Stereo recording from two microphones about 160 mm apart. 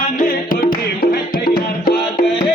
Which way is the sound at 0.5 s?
75° left (ahead or behind).